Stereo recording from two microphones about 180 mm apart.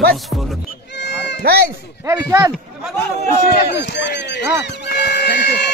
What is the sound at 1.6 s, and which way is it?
Speech, 15° right (ahead or behind).